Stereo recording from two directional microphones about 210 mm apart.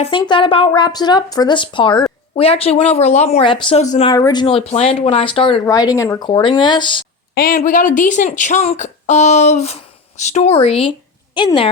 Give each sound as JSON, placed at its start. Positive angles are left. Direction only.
{"t": 0.0, "sound": "speech", "side_deg": 25}
{"t": 4.1, "sound": "speech", "side_deg": 20}
{"t": 7.3, "sound": "speech", "side_deg": 40}